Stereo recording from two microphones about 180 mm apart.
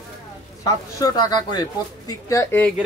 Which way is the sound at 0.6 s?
20° left (ahead or behind).